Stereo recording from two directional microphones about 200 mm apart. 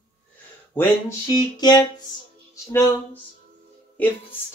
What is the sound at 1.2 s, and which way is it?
Female singing, 20° left (ahead or behind).